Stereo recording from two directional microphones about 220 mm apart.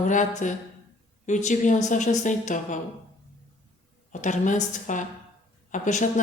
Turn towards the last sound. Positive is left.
turn(degrees=35)  # may be behind; listen again after turning